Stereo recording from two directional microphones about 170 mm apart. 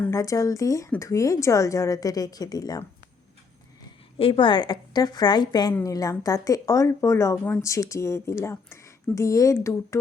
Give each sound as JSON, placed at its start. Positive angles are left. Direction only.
{"t": 0.0, "sound": "a woman's voice", "side_deg": 20}
{"t": 4.2, "sound": "a woman's voice", "side_deg": 30}